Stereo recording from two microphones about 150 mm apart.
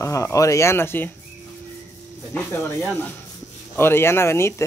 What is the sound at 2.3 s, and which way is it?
Speech, 10° left (ahead or behind).